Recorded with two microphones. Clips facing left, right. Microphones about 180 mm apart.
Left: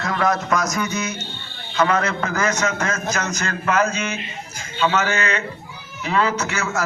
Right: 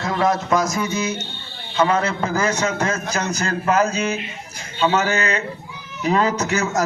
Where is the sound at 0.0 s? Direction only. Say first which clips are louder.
Right 1 dB; 25° right (ahead or behind).